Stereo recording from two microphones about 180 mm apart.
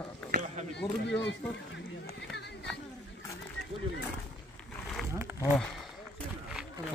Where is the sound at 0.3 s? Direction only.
40° right (ahead or behind).